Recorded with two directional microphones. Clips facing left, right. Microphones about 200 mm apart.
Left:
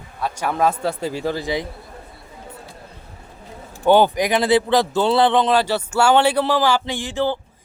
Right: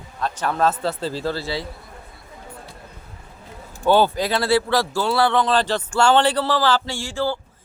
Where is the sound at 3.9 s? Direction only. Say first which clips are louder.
Left 2 dB; 15° left (ahead or behind).